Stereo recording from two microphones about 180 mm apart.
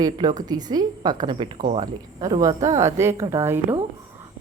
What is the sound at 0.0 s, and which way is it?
A woman's voice, 20° right (ahead or behind).